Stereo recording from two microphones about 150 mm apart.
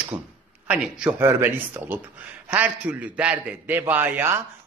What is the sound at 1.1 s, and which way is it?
A man's voice, 15° right (ahead or behind).